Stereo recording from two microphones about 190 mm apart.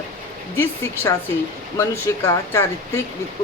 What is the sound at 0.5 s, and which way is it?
Speech, 10° left (ahead or behind).